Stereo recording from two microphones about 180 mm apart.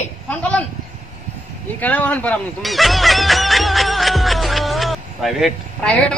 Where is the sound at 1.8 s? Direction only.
10° left (ahead or behind).